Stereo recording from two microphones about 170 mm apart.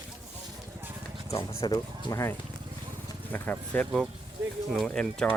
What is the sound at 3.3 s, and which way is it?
Speech, 10° left (ahead or behind).